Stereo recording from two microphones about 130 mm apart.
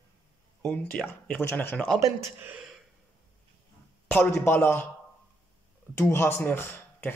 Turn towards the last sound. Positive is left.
turn(degrees=15)  # may be behind; listen again after turning